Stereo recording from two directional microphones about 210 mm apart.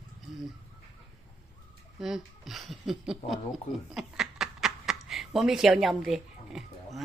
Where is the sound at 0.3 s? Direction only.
Centre (ahead or behind).